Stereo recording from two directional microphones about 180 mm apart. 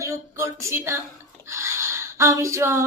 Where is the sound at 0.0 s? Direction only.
15° right (ahead or behind).